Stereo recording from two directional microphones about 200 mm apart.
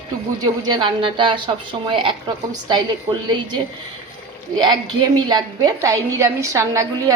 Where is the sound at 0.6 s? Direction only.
25° right (ahead or behind).